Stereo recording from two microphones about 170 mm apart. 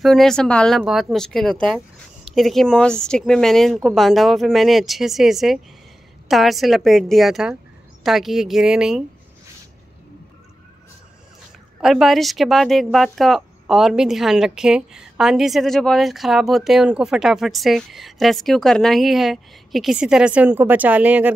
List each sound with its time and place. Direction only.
0.0 s speech: centre (ahead or behind)
11.8 s speech: centre (ahead or behind)